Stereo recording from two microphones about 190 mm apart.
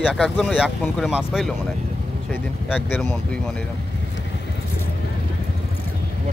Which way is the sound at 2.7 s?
10° left (ahead or behind).